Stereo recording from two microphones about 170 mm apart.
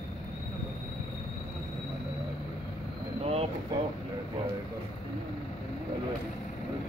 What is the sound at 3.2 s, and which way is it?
Boat, 35° right (ahead or behind).